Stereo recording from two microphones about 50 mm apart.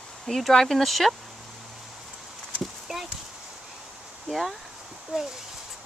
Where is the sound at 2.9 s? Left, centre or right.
Centre.